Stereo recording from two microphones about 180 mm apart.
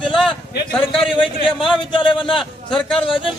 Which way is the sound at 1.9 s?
30° left (ahead or behind).